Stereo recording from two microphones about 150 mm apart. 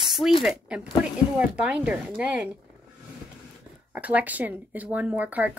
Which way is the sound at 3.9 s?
10° right (ahead or behind).